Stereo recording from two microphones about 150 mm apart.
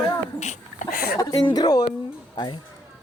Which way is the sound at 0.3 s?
50° left (ahead or behind).